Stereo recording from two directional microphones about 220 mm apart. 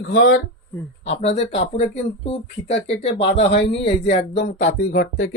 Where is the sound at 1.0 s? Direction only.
30° left (ahead or behind).